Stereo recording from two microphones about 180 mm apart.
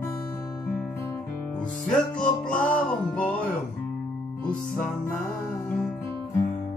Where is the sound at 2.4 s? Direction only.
5° left (ahead or behind).